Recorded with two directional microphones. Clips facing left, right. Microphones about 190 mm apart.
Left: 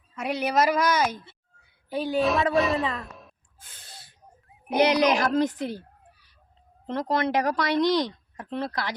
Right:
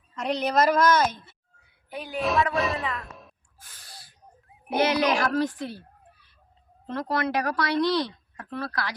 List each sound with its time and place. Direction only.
0.2 s a woman's voice: 10° left (ahead or behind)
1.9 s speech: 30° left (ahead or behind)
2.1 s speech: centre (ahead or behind)
3.6 s snort: 25° left (ahead or behind)
4.4 s a sound: centre (ahead or behind)
4.7 s speech: 15° left (ahead or behind)
6.8 s speech: 20° left (ahead or behind)